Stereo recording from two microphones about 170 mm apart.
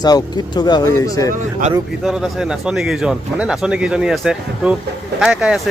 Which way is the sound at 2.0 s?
5° right (ahead or behind).